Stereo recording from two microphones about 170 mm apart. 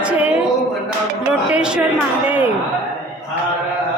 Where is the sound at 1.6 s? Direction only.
5° right (ahead or behind).